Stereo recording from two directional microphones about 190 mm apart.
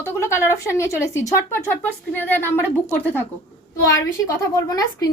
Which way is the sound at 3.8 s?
15° left (ahead or behind).